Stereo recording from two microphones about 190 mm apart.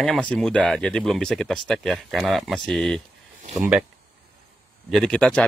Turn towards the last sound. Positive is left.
turn(degrees=5)  # may be behind; listen again after turning